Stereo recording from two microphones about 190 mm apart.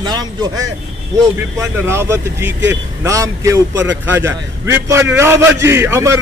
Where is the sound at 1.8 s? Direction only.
15° right (ahead or behind).